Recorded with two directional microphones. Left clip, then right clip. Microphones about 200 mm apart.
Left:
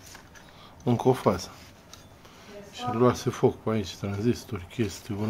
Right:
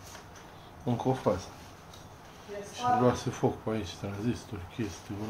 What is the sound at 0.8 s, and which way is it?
Speech, 50° left (ahead or behind).